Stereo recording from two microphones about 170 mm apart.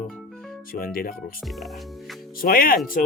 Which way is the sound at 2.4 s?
60° left (ahead or behind).